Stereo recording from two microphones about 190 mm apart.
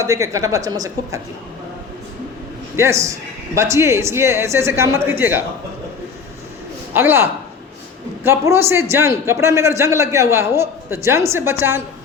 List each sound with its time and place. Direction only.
0.0 s a man's voice: 15° right (ahead or behind)
2.7 s a man's voice: 15° right (ahead or behind)
6.9 s a man's voice: 10° right (ahead or behind)